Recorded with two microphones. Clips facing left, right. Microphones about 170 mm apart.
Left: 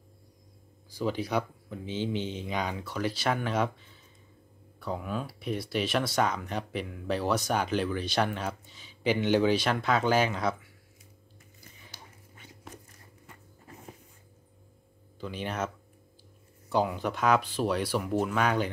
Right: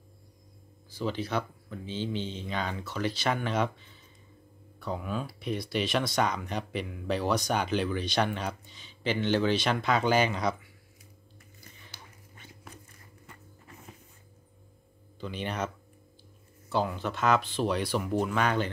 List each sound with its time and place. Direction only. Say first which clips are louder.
0.8 s speech: left 2 dB; 10° left (ahead or behind)
4.7 s speech: even; 5° left (ahead or behind)
11.7 s a sound: left 2 dB; 10° left (ahead or behind)
15.1 s speech: even; 5° left (ahead or behind)